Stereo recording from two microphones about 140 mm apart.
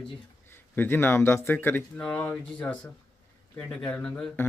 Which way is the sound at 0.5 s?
15° left (ahead or behind).